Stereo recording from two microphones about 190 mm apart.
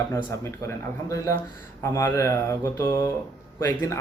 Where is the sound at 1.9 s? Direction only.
15° left (ahead or behind).